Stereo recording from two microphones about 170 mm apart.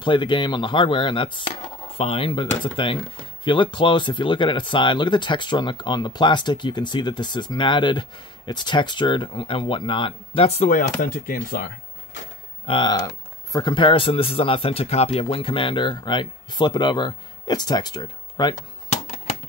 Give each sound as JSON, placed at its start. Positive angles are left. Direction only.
{"t": 0.0, "sound": "speech", "side_deg": 30}
{"t": 10.8, "sound": "speech", "side_deg": 50}
{"t": 12.6, "sound": "speech", "side_deg": 30}
{"t": 18.9, "sound": "typewriter", "side_deg": 40}